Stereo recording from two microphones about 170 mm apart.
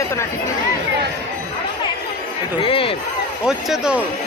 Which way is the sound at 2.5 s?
30° left (ahead or behind).